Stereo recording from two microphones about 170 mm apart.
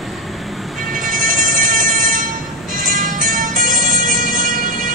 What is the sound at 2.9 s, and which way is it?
Music, 50° right (ahead or behind).